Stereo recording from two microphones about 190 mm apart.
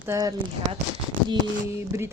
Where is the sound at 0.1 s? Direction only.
20° right (ahead or behind).